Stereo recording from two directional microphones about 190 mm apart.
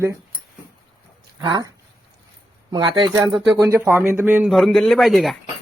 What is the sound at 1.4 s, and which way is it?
Speech, 25° right (ahead or behind).